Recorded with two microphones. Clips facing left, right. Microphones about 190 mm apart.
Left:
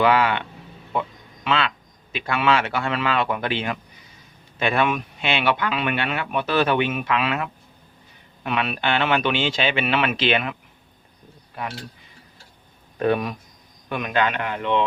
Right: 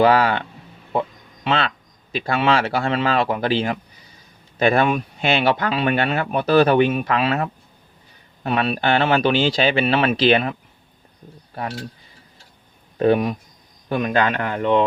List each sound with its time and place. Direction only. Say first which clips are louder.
0.0 s speech: right 3 dB; 35° right (ahead or behind)
1.5 s speech: right 2 dB; 35° right (ahead or behind)
13.0 s speech: right 4 dB; 30° right (ahead or behind)